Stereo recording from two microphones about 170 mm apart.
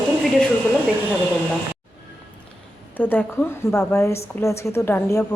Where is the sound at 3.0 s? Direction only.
10° left (ahead or behind).